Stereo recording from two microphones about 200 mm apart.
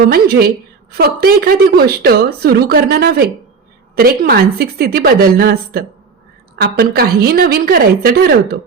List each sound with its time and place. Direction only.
0.0 s a woman's voice: 50° right (ahead or behind)